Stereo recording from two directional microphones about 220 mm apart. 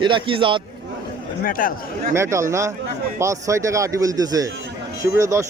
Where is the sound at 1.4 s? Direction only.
40° left (ahead or behind).